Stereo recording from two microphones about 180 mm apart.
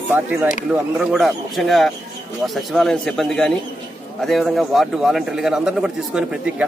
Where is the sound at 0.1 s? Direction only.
10° right (ahead or behind).